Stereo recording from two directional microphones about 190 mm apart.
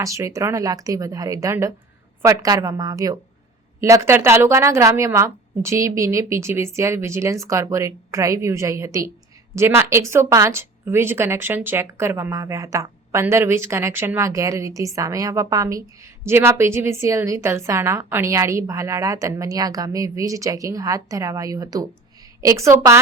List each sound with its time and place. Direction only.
0.0 s a woman's voice: 15° right (ahead or behind)